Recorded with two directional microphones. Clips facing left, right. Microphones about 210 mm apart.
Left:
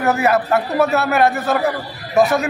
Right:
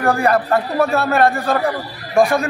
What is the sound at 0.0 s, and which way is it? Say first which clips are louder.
A man's voice: even; 5° left (ahead or behind).